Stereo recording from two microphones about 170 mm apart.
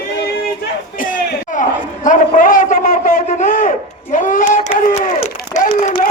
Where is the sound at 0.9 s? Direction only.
55° left (ahead or behind).